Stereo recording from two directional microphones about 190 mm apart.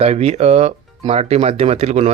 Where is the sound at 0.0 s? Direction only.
35° right (ahead or behind).